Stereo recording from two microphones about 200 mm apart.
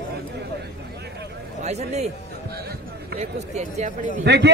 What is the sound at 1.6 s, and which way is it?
Speech, 35° right (ahead or behind).